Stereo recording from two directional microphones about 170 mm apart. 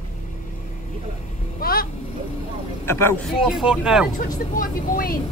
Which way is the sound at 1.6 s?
60° left (ahead or behind).